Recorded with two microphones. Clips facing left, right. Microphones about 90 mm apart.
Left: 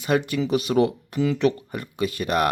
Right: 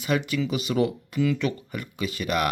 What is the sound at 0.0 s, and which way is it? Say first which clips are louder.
Speech: left 3 dB; 40° left (ahead or behind).